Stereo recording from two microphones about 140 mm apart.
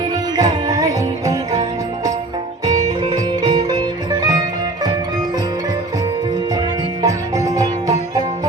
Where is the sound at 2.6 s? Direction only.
30° right (ahead or behind).